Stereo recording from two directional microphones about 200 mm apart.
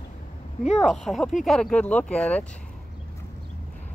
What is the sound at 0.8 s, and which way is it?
Speech, centre (ahead or behind).